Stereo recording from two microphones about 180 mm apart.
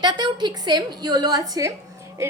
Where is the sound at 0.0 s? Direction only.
25° right (ahead or behind).